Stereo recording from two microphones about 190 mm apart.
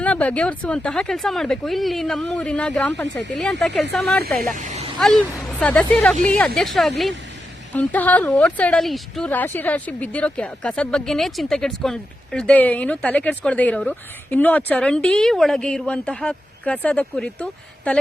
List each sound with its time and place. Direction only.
0.0 s speech: 5° left (ahead or behind)
4.5 s vehicle: 40° right (ahead or behind)
4.9 s a woman's voice: centre (ahead or behind)